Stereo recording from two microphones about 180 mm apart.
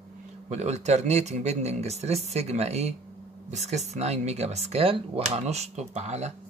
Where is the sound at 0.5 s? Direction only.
40° right (ahead or behind).